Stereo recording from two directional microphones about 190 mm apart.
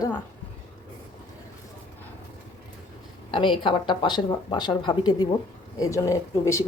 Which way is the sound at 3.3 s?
25° left (ahead or behind).